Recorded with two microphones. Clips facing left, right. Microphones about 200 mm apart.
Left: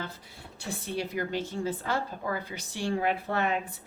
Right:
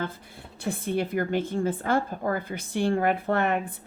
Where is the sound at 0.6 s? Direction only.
55° right (ahead or behind).